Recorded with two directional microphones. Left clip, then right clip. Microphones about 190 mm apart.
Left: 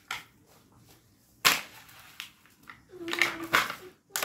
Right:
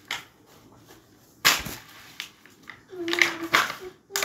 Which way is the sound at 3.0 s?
5° left (ahead or behind).